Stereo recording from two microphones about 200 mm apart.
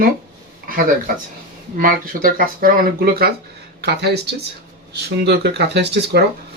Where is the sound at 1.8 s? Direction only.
45° right (ahead or behind).